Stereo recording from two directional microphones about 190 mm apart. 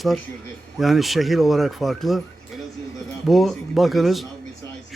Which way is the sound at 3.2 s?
Centre (ahead or behind).